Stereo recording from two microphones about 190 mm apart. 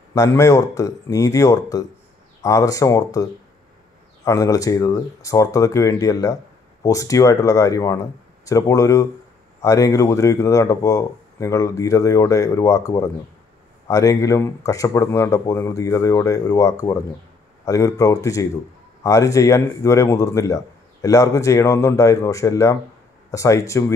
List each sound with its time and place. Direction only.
0.1 s speech: 15° left (ahead or behind)